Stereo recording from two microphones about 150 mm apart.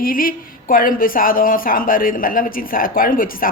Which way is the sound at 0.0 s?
70° left (ahead or behind).